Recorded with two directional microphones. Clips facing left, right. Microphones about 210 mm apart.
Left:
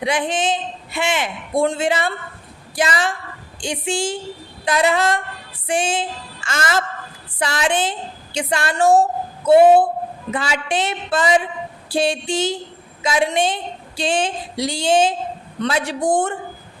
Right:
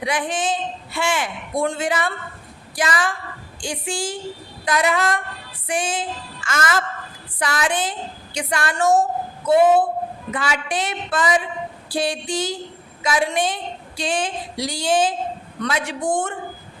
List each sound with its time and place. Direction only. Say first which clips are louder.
0.0 s a man's voice: left 3 dB; 25° left (ahead or behind)